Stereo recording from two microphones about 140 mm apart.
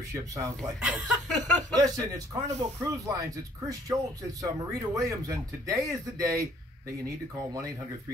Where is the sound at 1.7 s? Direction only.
30° right (ahead or behind).